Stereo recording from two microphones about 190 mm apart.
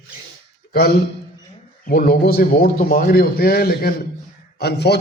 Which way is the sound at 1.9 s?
50° left (ahead or behind).